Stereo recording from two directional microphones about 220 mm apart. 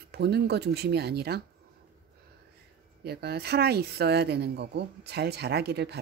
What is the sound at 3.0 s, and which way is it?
Speech, 45° right (ahead or behind).